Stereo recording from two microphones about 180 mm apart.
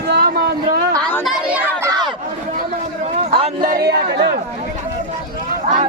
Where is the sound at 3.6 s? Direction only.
55° right (ahead or behind).